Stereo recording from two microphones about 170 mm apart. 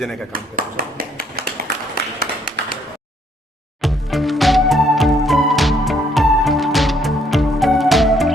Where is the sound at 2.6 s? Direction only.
85° right.